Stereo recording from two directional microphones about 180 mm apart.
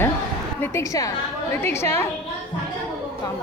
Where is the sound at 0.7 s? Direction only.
20° left (ahead or behind).